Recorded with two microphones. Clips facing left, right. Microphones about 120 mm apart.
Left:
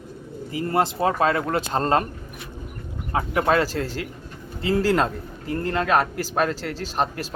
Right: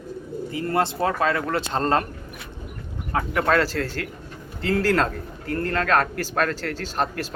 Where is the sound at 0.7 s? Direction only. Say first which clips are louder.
Left 2 dB; 15° left (ahead or behind).